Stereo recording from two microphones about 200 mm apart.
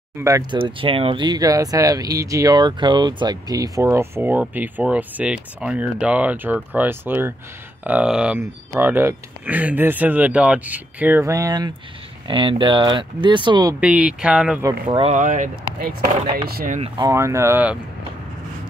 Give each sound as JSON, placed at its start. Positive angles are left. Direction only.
{"t": 0.2, "sound": "speech", "side_deg": -20}
{"t": 13.7, "sound": "speech", "side_deg": -5}
{"t": 14.6, "sound": "speech", "side_deg": -20}
{"t": 16.9, "sound": "speech", "side_deg": -15}